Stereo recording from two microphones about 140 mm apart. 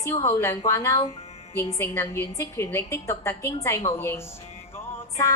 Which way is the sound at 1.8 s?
20° left (ahead or behind).